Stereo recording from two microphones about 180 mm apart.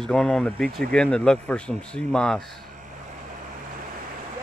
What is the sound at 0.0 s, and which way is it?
Speech, 5° left (ahead or behind).